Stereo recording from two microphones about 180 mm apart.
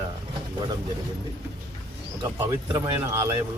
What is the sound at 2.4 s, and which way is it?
Speech, 15° right (ahead or behind).